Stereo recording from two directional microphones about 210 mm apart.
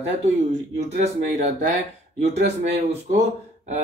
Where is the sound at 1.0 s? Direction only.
35° right (ahead or behind).